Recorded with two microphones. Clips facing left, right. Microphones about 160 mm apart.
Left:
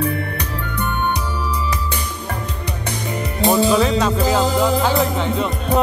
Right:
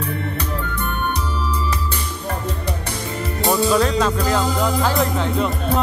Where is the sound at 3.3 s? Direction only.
20° left (ahead or behind).